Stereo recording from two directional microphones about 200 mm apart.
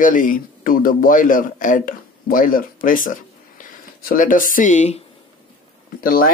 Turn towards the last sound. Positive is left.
turn(degrees=45)  # may be behind; listen again after turning